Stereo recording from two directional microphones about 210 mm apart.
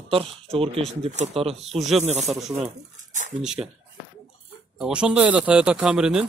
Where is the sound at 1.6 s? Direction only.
Centre (ahead or behind).